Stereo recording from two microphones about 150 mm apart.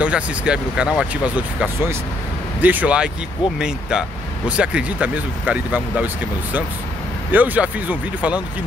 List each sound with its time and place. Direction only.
0.0 s speech: 10° right (ahead or behind)
7.2 s speech: 10° right (ahead or behind)